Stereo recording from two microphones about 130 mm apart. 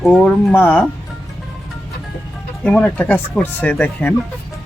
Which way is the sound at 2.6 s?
5° left (ahead or behind).